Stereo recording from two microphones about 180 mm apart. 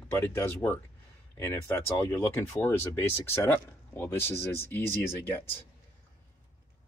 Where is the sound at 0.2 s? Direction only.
10° left (ahead or behind).